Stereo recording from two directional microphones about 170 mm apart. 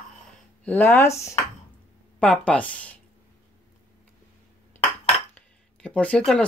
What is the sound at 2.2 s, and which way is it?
Speech, 5° left (ahead or behind).